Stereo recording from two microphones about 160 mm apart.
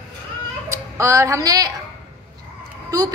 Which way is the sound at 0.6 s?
15° right (ahead or behind).